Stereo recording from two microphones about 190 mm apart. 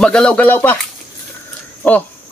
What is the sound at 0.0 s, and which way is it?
Speech, 5° left (ahead or behind).